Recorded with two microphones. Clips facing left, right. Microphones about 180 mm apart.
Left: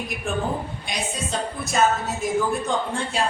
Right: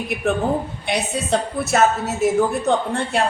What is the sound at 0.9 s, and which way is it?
A woman's voice, 65° right (ahead or behind).